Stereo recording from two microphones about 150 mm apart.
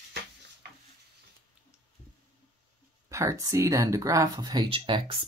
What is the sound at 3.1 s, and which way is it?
Speech, 20° right (ahead or behind).